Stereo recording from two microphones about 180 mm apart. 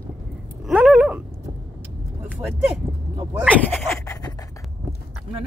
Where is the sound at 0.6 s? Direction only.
5° right (ahead or behind).